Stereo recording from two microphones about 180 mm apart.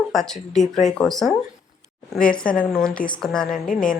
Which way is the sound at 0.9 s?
Centre (ahead or behind).